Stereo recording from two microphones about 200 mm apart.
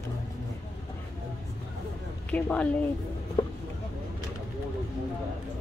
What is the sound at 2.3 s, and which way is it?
Speech, 5° left (ahead or behind).